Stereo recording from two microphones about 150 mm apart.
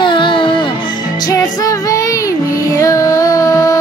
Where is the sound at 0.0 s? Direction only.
35° left (ahead or behind).